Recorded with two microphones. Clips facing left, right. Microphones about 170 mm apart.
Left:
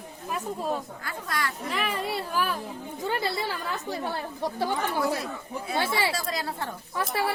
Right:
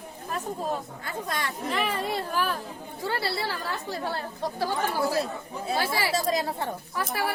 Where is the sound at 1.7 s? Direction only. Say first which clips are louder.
Right 3 dB; 5° left (ahead or behind).